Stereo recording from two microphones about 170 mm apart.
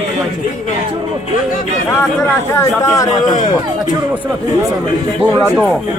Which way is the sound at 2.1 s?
10° left (ahead or behind).